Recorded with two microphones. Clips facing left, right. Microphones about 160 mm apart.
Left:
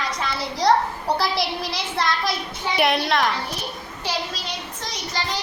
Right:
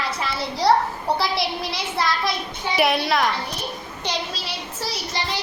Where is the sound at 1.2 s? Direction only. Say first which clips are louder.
Even; centre (ahead or behind).